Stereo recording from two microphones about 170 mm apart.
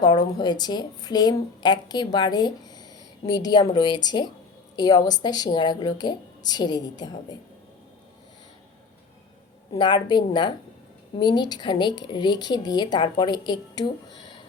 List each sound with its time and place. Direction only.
0.0 s a woman's voice: 25° left (ahead or behind)
9.7 s a woman's voice: 25° left (ahead or behind)